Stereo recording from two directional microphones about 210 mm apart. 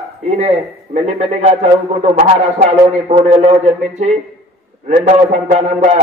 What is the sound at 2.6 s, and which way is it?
Speech, 35° right (ahead or behind).